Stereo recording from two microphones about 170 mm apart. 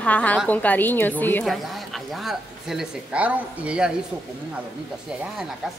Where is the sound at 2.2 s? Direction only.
5° right (ahead or behind).